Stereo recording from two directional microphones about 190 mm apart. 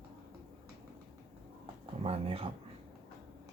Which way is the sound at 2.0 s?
30° right (ahead or behind).